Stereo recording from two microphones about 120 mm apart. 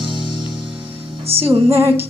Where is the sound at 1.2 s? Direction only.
55° right (ahead or behind).